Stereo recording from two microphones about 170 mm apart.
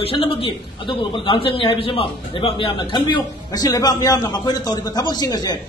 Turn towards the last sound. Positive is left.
turn(degrees=25)  # may be behind; listen again after turning